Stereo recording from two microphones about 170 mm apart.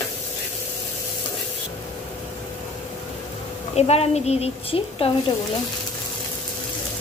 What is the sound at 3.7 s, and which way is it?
A woman's voice, 40° left (ahead or behind).